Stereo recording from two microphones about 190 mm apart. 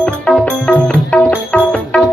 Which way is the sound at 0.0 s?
5° left (ahead or behind).